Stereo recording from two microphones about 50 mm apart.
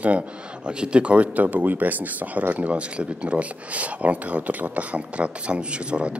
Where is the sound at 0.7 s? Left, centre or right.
Right.